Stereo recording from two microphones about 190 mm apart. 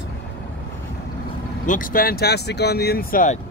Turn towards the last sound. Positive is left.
turn(degrees=45)  # may be behind; listen again after turning